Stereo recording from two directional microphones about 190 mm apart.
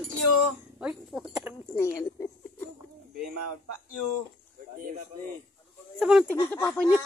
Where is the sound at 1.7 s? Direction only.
15° left (ahead or behind).